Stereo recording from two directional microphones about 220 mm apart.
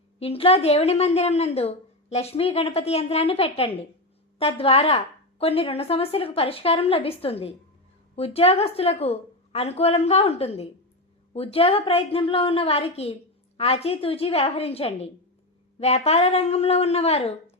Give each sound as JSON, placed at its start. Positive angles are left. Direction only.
{"t": 0.2, "sound": "a woman's voice", "side_deg": 25}